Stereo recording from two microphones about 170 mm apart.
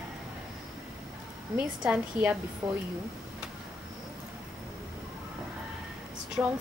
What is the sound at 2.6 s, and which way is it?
Speech, 20° right (ahead or behind).